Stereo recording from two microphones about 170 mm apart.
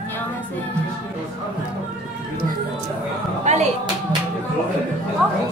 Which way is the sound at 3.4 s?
45° right (ahead or behind).